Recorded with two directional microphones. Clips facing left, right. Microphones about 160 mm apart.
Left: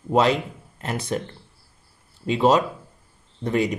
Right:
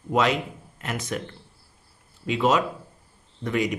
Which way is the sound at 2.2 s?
35° left (ahead or behind).